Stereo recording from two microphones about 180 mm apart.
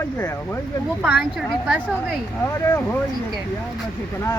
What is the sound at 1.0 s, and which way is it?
Speech, 5° right (ahead or behind).